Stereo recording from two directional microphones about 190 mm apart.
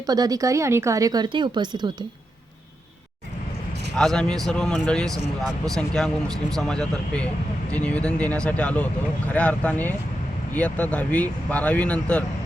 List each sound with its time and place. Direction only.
0.1 s speech: 20° right (ahead or behind)
3.9 s speech: 5° left (ahead or behind)